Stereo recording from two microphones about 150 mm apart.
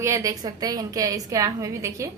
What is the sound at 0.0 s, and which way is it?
A woman's voice, 20° right (ahead or behind).